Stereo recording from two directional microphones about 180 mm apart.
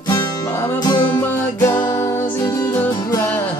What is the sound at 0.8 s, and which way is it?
Music, 20° left (ahead or behind).